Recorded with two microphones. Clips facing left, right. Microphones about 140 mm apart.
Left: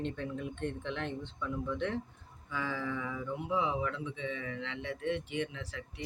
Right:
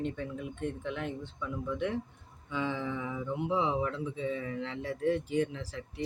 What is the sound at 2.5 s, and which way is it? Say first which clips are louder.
Speech: right 3 dB; 20° right (ahead or behind).